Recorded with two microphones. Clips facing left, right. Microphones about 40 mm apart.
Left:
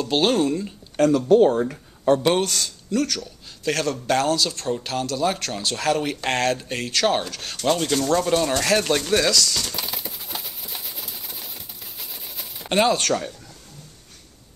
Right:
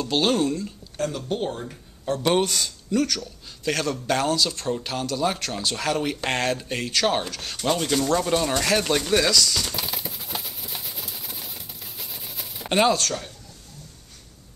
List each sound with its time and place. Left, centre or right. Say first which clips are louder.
0.0 s speech: left 2 dB; centre
1.0 s speech: left 9 dB; left
2.2 s speech: left 1 dB; centre